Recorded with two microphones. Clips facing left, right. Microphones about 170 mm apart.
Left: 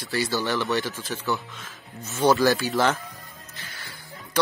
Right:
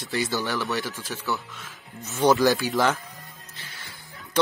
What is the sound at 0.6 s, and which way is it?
Speech, 5° right (ahead or behind).